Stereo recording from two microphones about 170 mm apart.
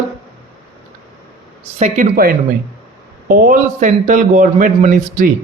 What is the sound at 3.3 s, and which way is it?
A man's voice, 50° right (ahead or behind).